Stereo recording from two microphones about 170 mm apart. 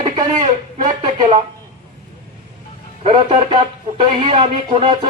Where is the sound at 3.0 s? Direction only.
30° right (ahead or behind).